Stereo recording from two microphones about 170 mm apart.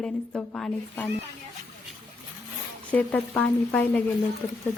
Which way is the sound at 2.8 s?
10° left (ahead or behind).